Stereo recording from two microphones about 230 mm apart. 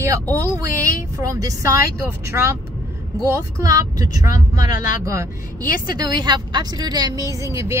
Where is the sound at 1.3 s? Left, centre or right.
Centre.